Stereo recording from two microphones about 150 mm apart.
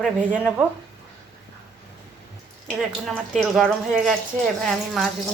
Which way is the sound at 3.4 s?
Centre (ahead or behind).